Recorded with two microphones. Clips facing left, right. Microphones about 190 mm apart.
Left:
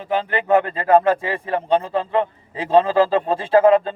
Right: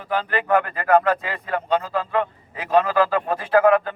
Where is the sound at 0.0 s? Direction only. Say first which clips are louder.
Left 2 dB; 25° left (ahead or behind).